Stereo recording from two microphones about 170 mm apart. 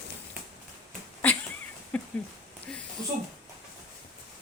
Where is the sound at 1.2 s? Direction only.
10° left (ahead or behind).